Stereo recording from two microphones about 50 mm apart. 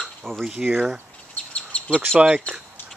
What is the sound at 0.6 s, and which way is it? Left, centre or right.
Speech, right.